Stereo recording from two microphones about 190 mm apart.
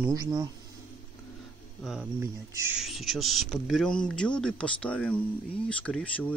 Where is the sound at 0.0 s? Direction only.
20° right (ahead or behind).